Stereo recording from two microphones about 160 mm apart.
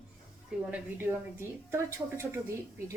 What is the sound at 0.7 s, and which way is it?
A woman's voice, 15° right (ahead or behind).